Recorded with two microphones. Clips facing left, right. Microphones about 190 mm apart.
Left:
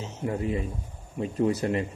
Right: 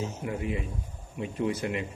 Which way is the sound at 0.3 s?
35° left (ahead or behind).